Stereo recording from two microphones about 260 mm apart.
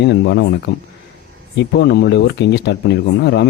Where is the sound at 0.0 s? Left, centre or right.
Left.